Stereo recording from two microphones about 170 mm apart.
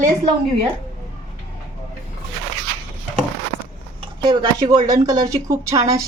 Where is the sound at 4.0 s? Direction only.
30° right (ahead or behind).